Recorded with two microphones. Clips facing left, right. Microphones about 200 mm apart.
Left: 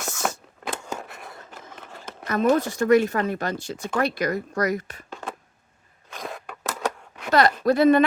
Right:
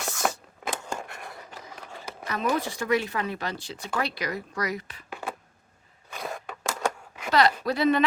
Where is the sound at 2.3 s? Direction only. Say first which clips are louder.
Left 7 dB; 45° left (ahead or behind).